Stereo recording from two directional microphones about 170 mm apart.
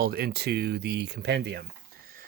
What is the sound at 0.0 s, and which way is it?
Speech, 65° right (ahead or behind).